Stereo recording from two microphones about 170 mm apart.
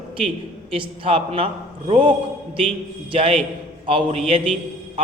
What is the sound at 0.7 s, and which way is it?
A man's voice, 35° right (ahead or behind).